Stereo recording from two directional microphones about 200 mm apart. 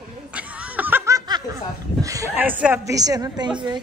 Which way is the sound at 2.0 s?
15° right (ahead or behind).